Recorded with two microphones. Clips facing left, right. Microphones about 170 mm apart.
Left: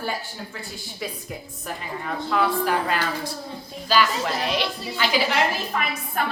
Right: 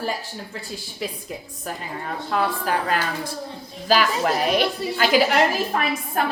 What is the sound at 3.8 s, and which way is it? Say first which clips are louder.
A woman's voice: right 2 dB; 50° right (ahead or behind).